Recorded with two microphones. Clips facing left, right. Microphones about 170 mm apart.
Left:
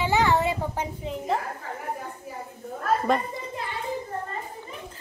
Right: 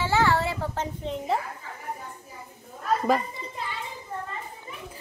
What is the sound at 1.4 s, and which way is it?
Speech, 60° left (ahead or behind).